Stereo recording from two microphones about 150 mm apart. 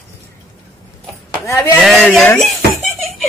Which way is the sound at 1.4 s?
15° left (ahead or behind).